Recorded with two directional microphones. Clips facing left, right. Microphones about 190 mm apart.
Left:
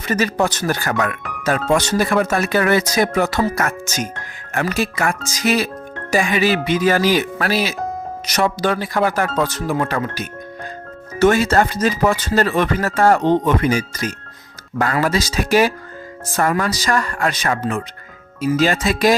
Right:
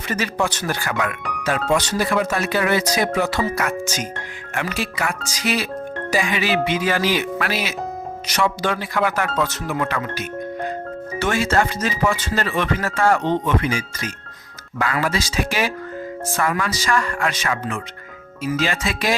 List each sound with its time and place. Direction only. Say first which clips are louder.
0.1 s speech: left 4 dB; 40° left (ahead or behind)
11.2 s speech: left 6 dB; 40° left (ahead or behind)